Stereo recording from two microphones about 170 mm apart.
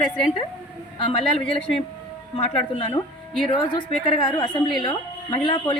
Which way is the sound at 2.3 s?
35° left (ahead or behind).